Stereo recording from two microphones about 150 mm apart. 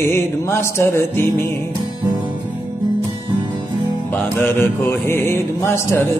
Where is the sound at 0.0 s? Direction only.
15° left (ahead or behind).